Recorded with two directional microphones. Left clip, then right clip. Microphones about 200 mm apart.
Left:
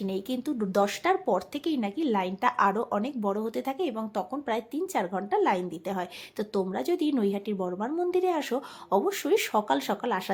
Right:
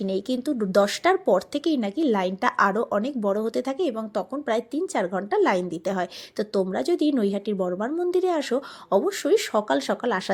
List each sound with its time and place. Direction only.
0.0 s a woman's voice: 20° right (ahead or behind)